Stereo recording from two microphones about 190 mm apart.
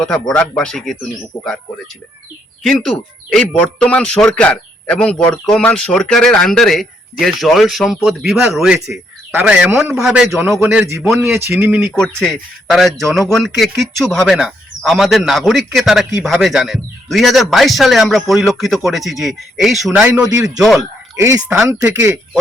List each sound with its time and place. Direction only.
0.0 s a man's voice: 5° left (ahead or behind)
2.6 s a man's voice: centre (ahead or behind)
11.9 s a man's voice: 5° left (ahead or behind)
21.2 s a man's voice: 15° right (ahead or behind)